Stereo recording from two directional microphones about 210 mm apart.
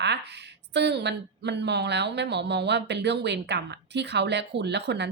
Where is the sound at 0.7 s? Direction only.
55° right (ahead or behind).